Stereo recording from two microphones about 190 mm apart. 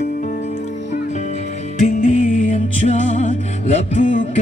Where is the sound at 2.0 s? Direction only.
40° left (ahead or behind).